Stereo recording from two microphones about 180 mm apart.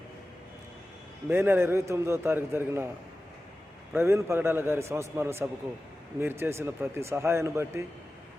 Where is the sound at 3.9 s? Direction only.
15° right (ahead or behind).